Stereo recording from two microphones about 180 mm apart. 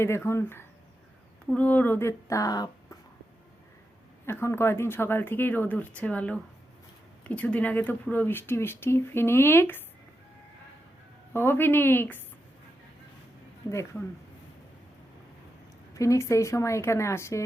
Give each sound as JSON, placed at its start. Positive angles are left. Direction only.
{"t": 0.0, "sound": "speech", "side_deg": 15}
{"t": 4.3, "sound": "speech", "side_deg": 15}
{"t": 11.3, "sound": "speech", "side_deg": 10}
{"t": 16.0, "sound": "speech", "side_deg": 15}